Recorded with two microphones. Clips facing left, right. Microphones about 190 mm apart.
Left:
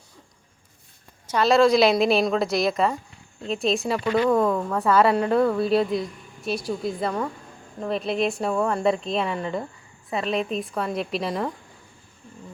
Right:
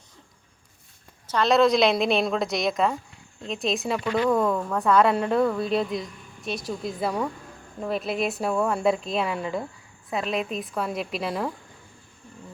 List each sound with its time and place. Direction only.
1.3 s a woman's voice: 5° left (ahead or behind)